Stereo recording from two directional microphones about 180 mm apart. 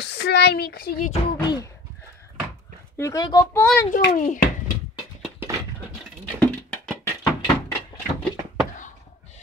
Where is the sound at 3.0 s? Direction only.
20° left (ahead or behind).